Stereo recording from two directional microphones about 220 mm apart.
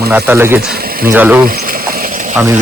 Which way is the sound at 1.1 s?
10° right (ahead or behind).